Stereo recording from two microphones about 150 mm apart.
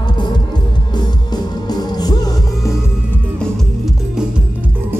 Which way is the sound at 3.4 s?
Centre (ahead or behind).